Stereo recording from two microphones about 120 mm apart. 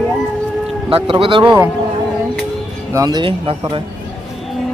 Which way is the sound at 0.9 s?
50° right (ahead or behind).